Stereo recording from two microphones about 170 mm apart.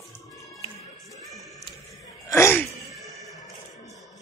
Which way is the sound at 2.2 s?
15° left (ahead or behind).